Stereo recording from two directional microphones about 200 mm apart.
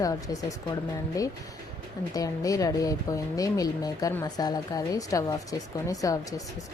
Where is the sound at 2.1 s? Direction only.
15° left (ahead or behind).